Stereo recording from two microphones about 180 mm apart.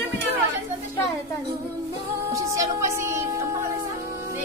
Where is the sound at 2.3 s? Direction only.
15° right (ahead or behind).